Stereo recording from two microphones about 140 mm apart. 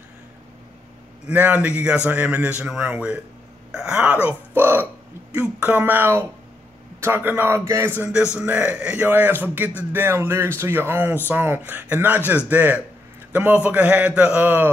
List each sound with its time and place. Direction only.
1.3 s a man's voice: 10° right (ahead or behind)